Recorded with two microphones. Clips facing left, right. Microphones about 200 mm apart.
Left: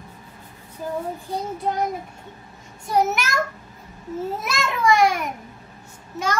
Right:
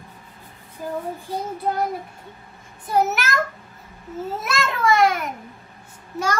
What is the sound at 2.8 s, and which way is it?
Speech, 5° right (ahead or behind).